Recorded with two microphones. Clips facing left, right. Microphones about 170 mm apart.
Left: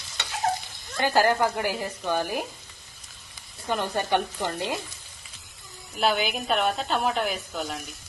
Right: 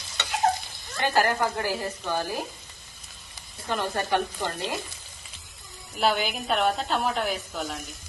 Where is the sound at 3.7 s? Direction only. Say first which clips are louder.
Left 1 dB; 20° left (ahead or behind).